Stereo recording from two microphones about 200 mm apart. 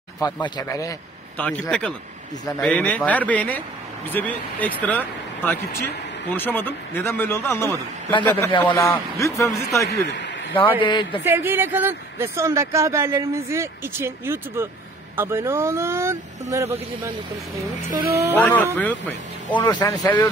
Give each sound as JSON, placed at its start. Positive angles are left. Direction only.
{"t": 0.2, "sound": "speech", "side_deg": 20}
{"t": 1.4, "sound": "speech", "side_deg": 5}
{"t": 8.7, "sound": "speech", "side_deg": 15}
{"t": 9.8, "sound": "a man's voice", "side_deg": 60}
{"t": 10.8, "sound": "speech", "side_deg": 25}
{"t": 11.2, "sound": "speech", "side_deg": -10}
{"t": 17.9, "sound": "speech", "side_deg": -50}
{"t": 18.3, "sound": "speech", "side_deg": 10}
{"t": 19.7, "sound": "speech", "side_deg": 20}